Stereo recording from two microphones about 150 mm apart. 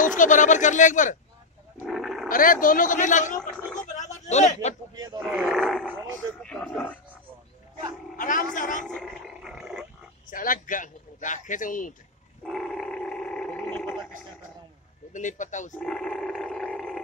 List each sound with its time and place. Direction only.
0.0 s a man's voice: 60° left (ahead or behind)
1.9 s dog: centre (ahead or behind)
2.2 s a man's voice: 65° left (ahead or behind)
3.8 s a sound: 55° left (ahead or behind)
5.2 s roar: centre (ahead or behind)
8.2 s a man's voice: 60° left (ahead or behind)
8.8 s roaring cats: 5° left (ahead or behind)
10.3 s a man's voice: 65° left (ahead or behind)
12.4 s dog: 5° left (ahead or behind)
15.1 s a man's voice: 55° left (ahead or behind)
15.8 s roar: 5° left (ahead or behind)
16.6 s a sound: centre (ahead or behind)